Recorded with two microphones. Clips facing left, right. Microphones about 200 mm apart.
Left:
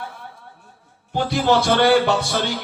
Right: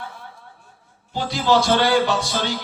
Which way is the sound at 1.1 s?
60° left (ahead or behind).